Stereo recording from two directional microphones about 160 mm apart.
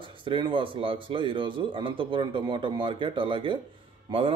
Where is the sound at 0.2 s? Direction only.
30° right (ahead or behind).